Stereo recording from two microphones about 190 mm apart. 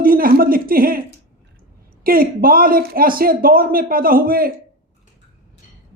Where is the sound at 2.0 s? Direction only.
50° right (ahead or behind).